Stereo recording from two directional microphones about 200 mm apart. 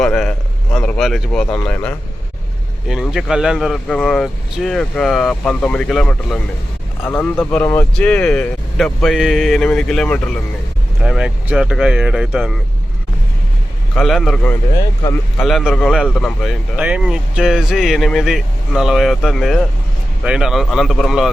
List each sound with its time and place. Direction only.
0.0 s a sound: 5° left (ahead or behind)
1.5 s speech: 10° left (ahead or behind)
2.9 s speech: centre (ahead or behind)
13.9 s speech: centre (ahead or behind)
16.7 s speech: 5° right (ahead or behind)